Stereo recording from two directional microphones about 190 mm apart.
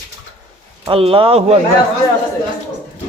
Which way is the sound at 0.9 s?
30° right (ahead or behind).